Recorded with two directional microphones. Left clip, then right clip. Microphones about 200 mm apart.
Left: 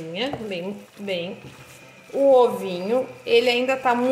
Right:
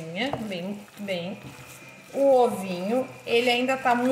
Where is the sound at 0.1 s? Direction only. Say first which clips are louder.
Left 2 dB; 40° left (ahead or behind).